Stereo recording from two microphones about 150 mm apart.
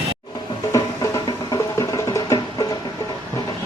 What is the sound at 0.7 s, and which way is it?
Music, 25° left (ahead or behind).